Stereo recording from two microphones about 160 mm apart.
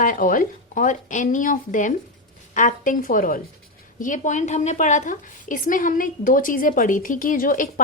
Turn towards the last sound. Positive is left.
turn(degrees=55)  # may be behind; listen again after turning